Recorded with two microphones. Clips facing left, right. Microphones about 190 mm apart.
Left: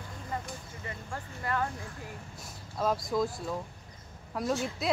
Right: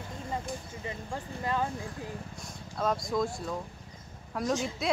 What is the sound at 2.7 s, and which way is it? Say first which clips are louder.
Speech: even; centre (ahead or behind).